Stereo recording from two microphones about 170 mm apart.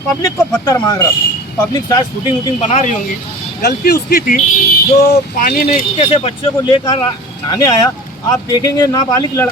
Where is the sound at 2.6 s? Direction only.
45° left (ahead or behind).